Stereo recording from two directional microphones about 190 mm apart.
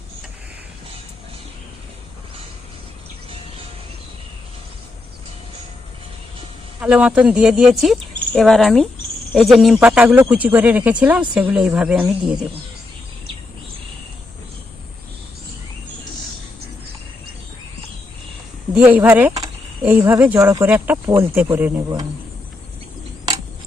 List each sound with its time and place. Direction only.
6.7 s speech: 5° right (ahead or behind)
18.7 s speech: 5° right (ahead or behind)